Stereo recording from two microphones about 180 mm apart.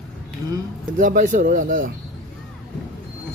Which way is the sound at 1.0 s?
50° right (ahead or behind).